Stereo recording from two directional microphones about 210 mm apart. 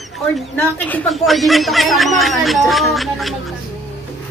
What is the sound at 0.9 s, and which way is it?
Speech, 5° left (ahead or behind).